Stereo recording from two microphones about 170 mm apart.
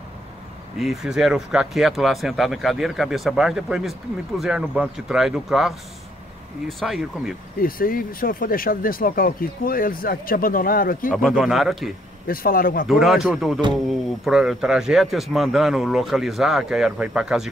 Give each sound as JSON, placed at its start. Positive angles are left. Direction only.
{"t": 0.7, "sound": "speech", "side_deg": 0}
{"t": 6.8, "sound": "speech", "side_deg": 0}
{"t": 7.6, "sound": "speech", "side_deg": 55}
{"t": 11.1, "sound": "speech", "side_deg": -5}
{"t": 12.3, "sound": "speech", "side_deg": 60}
{"t": 12.8, "sound": "speech", "side_deg": 0}